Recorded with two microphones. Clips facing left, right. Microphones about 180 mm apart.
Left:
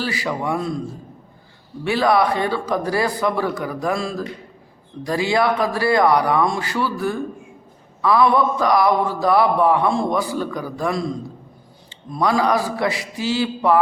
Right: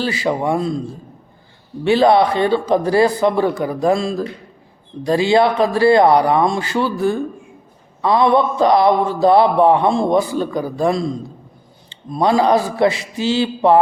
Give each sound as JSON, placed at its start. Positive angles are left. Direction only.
{"t": 0.0, "sound": "speech", "side_deg": -25}
{"t": 1.8, "sound": "speech", "side_deg": -25}